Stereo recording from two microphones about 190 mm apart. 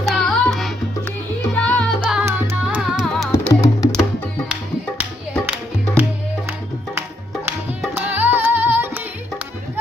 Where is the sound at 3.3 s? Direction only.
15° left (ahead or behind).